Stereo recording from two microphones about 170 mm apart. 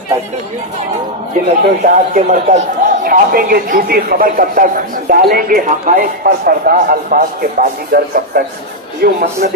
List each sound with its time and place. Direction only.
1.8 s a man's voice: 40° right (ahead or behind); by 9.5 s 65° right (ahead or behind)